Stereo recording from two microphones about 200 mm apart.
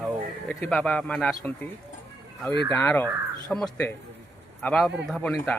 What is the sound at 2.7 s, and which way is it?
Speech, 10° left (ahead or behind).